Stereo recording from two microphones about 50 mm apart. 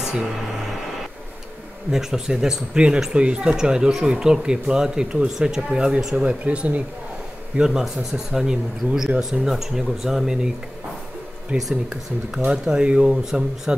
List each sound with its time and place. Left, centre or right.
1.9 s speech: centre
6.2 s speech: right
7.5 s speech: centre
11.5 s speech: centre